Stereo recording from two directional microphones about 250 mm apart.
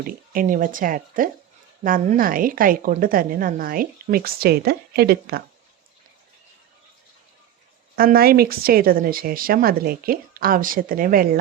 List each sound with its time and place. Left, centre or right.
0.0 s a woman's voice: right
7.9 s a woman's voice: right